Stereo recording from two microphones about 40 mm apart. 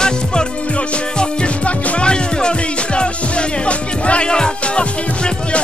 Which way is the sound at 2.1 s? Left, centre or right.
Left.